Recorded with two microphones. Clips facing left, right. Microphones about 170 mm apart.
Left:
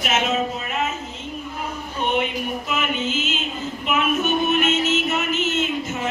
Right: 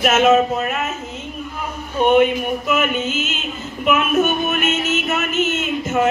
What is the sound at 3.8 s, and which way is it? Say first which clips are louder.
Music: right 5 dB; 50° right (ahead or behind).